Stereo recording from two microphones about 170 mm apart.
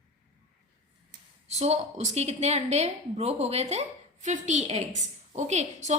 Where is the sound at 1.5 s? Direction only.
40° right (ahead or behind).